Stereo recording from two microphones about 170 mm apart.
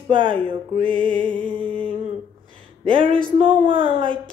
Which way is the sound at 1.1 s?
5° left (ahead or behind).